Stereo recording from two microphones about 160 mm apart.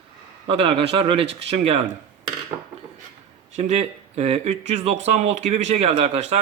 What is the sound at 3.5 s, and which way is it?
Speech, 40° right (ahead or behind).